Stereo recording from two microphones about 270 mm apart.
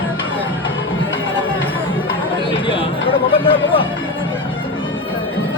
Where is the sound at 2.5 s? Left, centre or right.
Centre.